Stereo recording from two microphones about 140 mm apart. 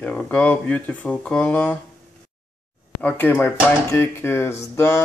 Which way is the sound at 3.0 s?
15° left (ahead or behind).